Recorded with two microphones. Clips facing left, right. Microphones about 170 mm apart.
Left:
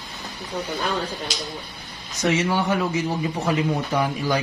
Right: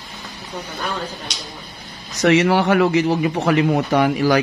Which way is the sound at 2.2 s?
80° right.